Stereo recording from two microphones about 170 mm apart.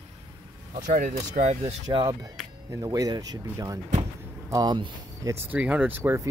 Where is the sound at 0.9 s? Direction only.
45° right (ahead or behind).